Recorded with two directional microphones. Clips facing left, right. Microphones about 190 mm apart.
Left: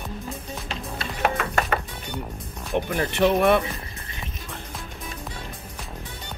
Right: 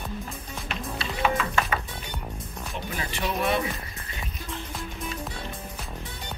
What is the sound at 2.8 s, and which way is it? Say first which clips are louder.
Speech: left 11 dB; 60° left (ahead or behind).